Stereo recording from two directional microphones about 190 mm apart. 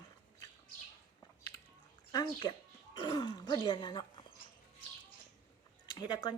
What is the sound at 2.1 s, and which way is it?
Speech, 20° left (ahead or behind).